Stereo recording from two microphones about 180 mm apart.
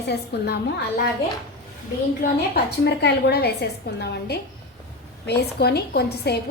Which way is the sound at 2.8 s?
70° left (ahead or behind).